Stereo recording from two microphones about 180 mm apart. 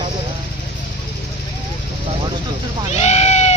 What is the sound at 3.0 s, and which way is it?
Sheep, 40° left (ahead or behind).